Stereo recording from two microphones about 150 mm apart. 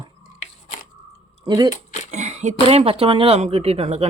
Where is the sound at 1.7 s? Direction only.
55° left (ahead or behind).